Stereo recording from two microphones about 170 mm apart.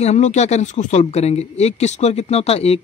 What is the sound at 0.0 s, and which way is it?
Speech, 40° left (ahead or behind).